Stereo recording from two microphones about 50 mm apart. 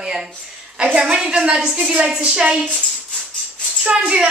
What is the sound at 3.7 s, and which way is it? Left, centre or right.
Music, centre.